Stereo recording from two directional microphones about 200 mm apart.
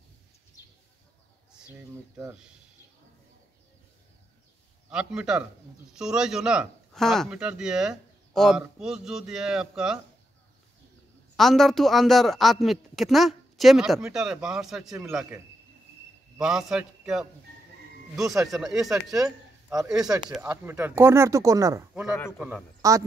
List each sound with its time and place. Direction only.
1.5 s speech: 10° right (ahead or behind)
4.8 s a man's voice: 5° right (ahead or behind)
11.3 s a man's voice: centre (ahead or behind)
18.5 s a man's voice: centre (ahead or behind)
22.8 s speech: 15° right (ahead or behind)